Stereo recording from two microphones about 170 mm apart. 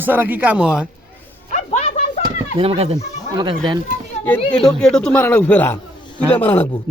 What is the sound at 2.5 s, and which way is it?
Speech, 35° right (ahead or behind).